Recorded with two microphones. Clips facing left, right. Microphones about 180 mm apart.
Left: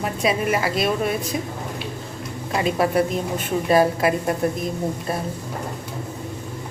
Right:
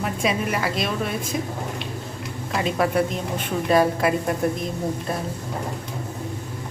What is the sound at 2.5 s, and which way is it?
A woman's voice, 5° left (ahead or behind).